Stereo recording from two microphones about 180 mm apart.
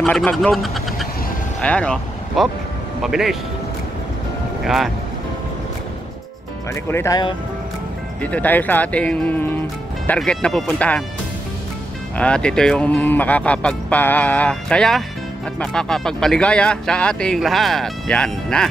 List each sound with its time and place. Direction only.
0.0 s speech: 5° left (ahead or behind)
4.6 s speech: centre (ahead or behind)
6.7 s speech: 15° left (ahead or behind)
8.2 s speech: 10° left (ahead or behind)
12.2 s speech: 5° left (ahead or behind)